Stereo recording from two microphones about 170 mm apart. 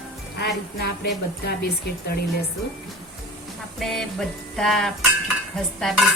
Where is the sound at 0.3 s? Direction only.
75° left (ahead or behind).